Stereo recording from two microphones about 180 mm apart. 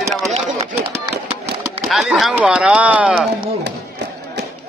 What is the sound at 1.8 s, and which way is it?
A man's voice, centre (ahead or behind).